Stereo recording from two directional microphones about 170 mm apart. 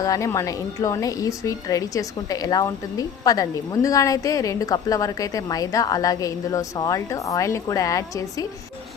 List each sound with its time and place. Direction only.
0.0 s a woman's voice: 20° left (ahead or behind)